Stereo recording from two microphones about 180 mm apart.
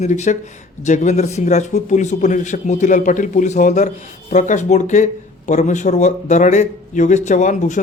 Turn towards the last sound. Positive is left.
turn(degrees=45)  # may be behind; listen again after turning